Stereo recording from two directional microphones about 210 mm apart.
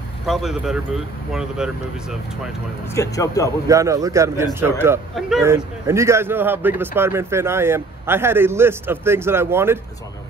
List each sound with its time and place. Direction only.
0.3 s speech: centre (ahead or behind)
2.9 s speech: 15° left (ahead or behind)
3.6 s a man's voice: 15° right (ahead or behind)